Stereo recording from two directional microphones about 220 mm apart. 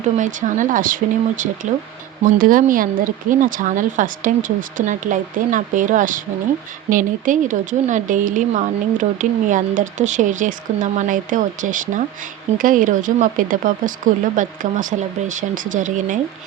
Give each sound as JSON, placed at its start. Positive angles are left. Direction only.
{"t": 0.2, "sound": "speech", "side_deg": -35}